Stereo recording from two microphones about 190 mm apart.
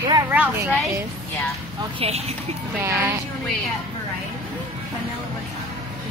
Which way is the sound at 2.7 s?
10° right (ahead or behind).